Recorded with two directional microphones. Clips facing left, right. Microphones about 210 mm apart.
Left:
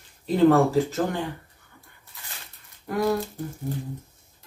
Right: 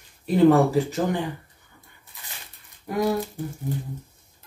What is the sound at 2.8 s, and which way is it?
Speech, 15° right (ahead or behind).